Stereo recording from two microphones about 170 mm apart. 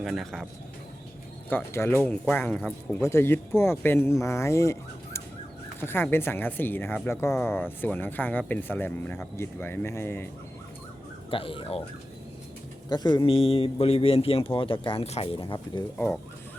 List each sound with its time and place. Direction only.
0.0 s speech: centre (ahead or behind)
1.5 s speech: 10° left (ahead or behind)
11.3 s a man's voice: 30° left (ahead or behind)
12.9 s a man's voice: 25° left (ahead or behind)